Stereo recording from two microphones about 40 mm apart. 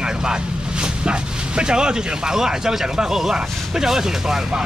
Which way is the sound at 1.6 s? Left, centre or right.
Right.